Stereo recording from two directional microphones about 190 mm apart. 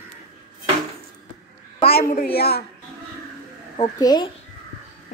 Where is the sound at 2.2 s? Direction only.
55° left (ahead or behind).